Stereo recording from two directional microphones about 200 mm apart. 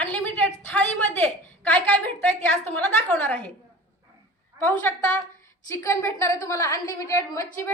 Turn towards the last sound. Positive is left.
turn(degrees=15)  # may be behind; listen again after turning